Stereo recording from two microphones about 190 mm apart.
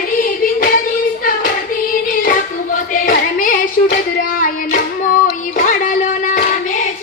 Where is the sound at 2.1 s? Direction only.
45° left (ahead or behind).